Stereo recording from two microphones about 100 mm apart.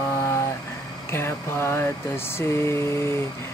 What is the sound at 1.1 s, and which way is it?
Mantra, 25° left (ahead or behind).